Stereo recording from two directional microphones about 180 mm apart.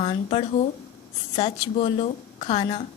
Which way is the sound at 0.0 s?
30° left (ahead or behind).